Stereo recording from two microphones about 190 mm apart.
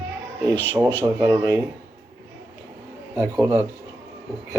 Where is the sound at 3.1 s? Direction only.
15° right (ahead or behind).